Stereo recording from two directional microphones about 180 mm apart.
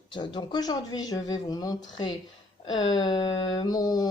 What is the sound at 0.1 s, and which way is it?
Speech, 25° left (ahead or behind).